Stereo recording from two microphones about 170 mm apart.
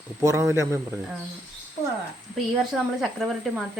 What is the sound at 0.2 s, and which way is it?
Speech, 15° right (ahead or behind).